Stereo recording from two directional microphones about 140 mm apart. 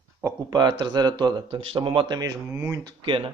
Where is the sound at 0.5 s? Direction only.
30° right (ahead or behind).